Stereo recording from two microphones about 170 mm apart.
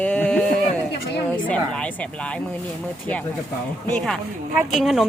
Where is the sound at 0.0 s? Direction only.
5° left (ahead or behind).